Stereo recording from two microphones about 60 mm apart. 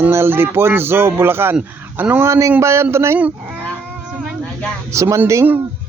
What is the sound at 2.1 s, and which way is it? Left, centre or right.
Speech, right.